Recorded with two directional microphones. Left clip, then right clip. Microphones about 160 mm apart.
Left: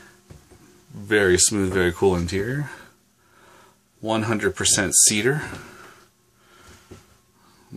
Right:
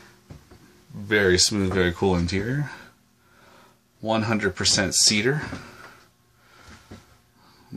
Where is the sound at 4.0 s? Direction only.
10° left (ahead or behind).